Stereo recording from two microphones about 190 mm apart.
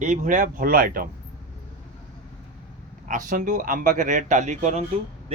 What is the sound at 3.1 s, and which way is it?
Speech, 45° right (ahead or behind).